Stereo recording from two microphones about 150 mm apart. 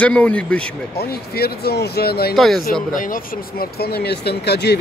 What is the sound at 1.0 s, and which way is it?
Speech, 90° left.